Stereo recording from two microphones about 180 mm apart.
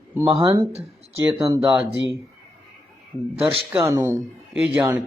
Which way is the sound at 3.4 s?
30° right (ahead or behind).